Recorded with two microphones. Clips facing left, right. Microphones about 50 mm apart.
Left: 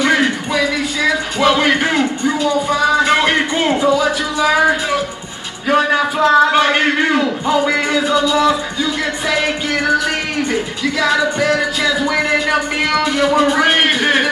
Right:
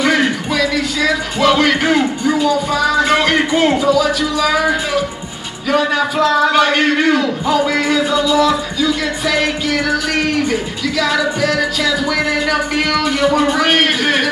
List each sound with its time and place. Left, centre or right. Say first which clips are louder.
0.6 s a sound: right 1 dB; centre
1.6 s a man's voice: right 1 dB; left
5.9 s a man's voice: left 2 dB; left